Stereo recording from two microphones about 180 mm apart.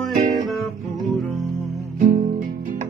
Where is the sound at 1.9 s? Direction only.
45° right (ahead or behind).